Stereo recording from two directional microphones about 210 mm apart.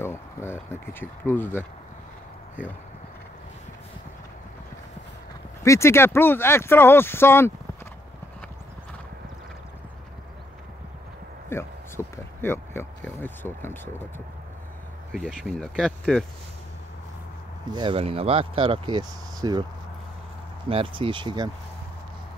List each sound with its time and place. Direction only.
0.0 s speech: 10° left (ahead or behind)
5.6 s speech: 15° left (ahead or behind)
11.4 s speech: 10° left (ahead or behind)
15.1 s speech: centre (ahead or behind)
17.6 s speech: 20° right (ahead or behind)
20.6 s speech: 25° right (ahead or behind)